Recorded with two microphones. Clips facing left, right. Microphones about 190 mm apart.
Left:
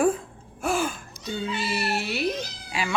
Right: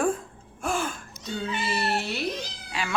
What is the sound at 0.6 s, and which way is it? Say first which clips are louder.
Gasp: left 3 dB; 5° left (ahead or behind).